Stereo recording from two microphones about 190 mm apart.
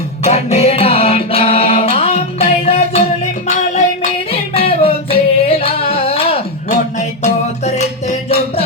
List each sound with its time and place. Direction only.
0.2 s music: 35° left (ahead or behind)
4.3 s music: 30° left (ahead or behind)